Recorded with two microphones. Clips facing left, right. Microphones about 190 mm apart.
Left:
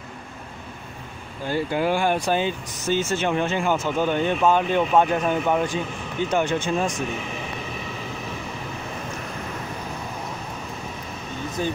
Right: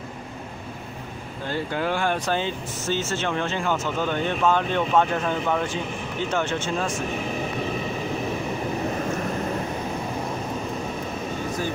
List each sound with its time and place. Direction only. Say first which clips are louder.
1.5 s speech: left 4 dB; 10° left (ahead or behind)